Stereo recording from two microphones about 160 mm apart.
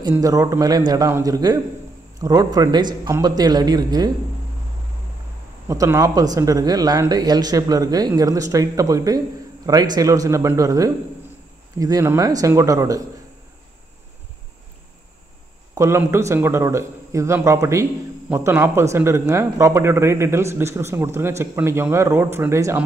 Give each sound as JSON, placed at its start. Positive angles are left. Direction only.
{"t": 0.2, "sound": "speech", "side_deg": -20}
{"t": 5.7, "sound": "speech", "side_deg": -20}
{"t": 15.7, "sound": "speech", "side_deg": -20}